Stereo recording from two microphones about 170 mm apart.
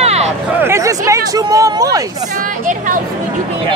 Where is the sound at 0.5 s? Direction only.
15° right (ahead or behind).